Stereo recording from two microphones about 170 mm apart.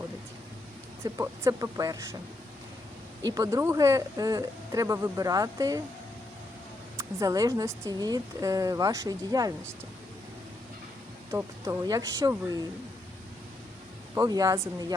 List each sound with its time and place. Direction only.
1.0 s speech: 20° right (ahead or behind)
3.2 s speech: 20° right (ahead or behind)
6.9 s speech: 20° right (ahead or behind)
11.3 s speech: 15° right (ahead or behind)
14.2 s speech: 20° right (ahead or behind)